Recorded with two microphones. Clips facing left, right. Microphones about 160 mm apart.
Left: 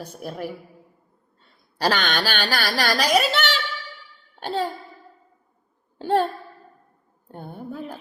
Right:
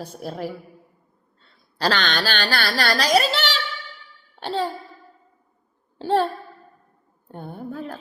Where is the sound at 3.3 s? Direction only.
50° left (ahead or behind).